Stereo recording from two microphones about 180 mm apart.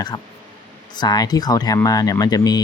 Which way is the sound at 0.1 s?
25° left (ahead or behind).